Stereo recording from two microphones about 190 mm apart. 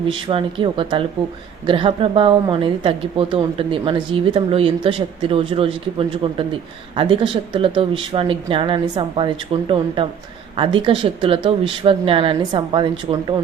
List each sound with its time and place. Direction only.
0.1 s a woman's voice: 30° right (ahead or behind)